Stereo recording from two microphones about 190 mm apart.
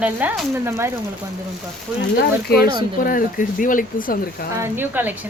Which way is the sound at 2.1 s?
55° left (ahead or behind).